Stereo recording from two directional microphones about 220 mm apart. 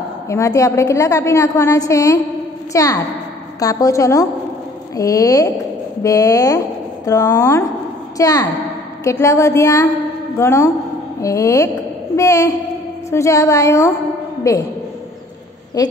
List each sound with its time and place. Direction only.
0.3 s a woman's voice: 15° left (ahead or behind)
15.8 s a woman's voice: 15° left (ahead or behind)